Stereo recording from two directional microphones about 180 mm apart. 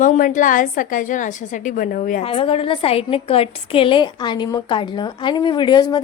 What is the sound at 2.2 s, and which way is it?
A woman's voice, 30° left (ahead or behind).